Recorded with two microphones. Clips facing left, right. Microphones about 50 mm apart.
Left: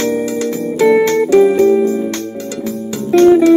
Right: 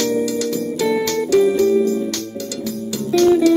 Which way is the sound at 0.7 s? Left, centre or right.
Left.